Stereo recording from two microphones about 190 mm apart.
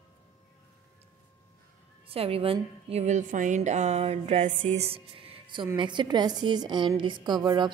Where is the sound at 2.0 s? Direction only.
30° right (ahead or behind).